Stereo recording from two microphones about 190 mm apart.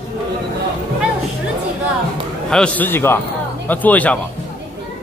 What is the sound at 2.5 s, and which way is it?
A man's voice, 5° left (ahead or behind).